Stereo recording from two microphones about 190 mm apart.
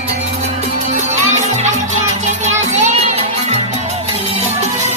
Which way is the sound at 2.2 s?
40° right (ahead or behind).